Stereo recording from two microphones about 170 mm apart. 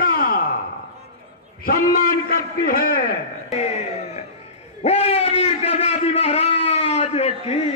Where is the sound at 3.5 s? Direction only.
40° left (ahead or behind).